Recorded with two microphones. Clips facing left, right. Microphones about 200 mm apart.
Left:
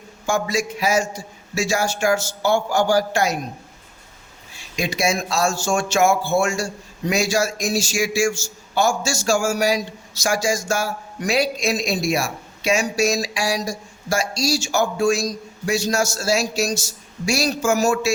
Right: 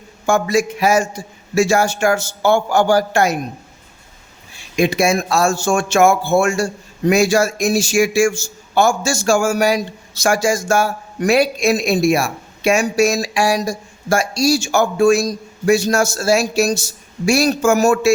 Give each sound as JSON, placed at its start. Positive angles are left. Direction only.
{"t": 0.3, "sound": "a man's voice", "side_deg": -55}
{"t": 4.8, "sound": "a man's voice", "side_deg": -55}